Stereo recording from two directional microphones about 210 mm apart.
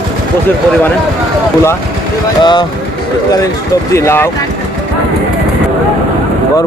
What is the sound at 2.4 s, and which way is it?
Speech, 20° left (ahead or behind).